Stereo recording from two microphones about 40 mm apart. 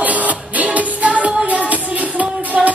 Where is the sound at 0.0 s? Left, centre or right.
Right.